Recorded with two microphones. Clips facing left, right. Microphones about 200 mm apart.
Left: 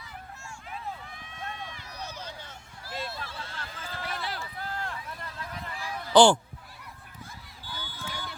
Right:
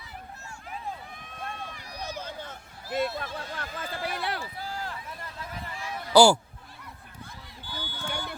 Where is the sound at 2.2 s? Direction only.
50° right (ahead or behind).